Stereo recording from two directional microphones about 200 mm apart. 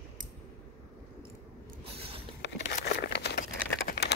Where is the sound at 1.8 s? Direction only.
30° right (ahead or behind).